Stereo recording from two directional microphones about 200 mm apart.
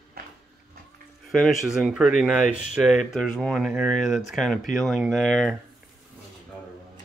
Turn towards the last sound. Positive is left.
turn(degrees=0)  # may be behind; listen again after turning